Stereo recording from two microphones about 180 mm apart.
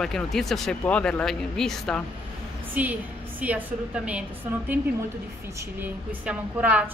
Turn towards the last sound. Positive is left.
turn(degrees=-10)  # may be behind; listen again after turning